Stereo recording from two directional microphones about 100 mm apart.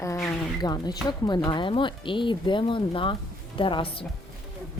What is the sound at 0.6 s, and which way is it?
Speech, 45° left (ahead or behind).